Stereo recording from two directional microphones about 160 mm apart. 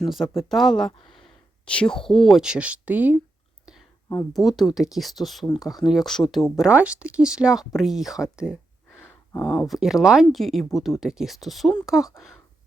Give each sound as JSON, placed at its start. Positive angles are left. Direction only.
{"t": 0.0, "sound": "speech", "side_deg": 0}
{"t": 4.3, "sound": "speech", "side_deg": 0}
{"t": 9.0, "sound": "a sound", "side_deg": 20}
{"t": 9.6, "sound": "speech", "side_deg": 0}